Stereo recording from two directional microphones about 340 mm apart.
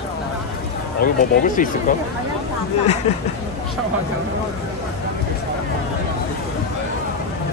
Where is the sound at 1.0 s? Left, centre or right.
Left.